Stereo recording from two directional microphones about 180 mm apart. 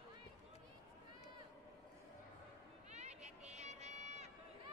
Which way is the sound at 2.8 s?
40° right (ahead or behind).